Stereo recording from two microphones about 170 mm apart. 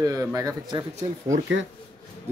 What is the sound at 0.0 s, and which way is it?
Speech, 20° right (ahead or behind).